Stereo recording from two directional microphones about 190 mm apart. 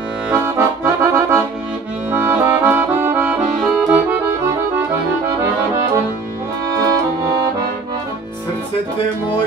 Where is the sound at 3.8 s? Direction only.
5° right (ahead or behind).